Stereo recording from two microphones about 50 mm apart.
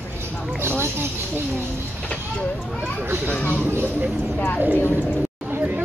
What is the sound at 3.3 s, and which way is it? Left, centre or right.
Speech, left.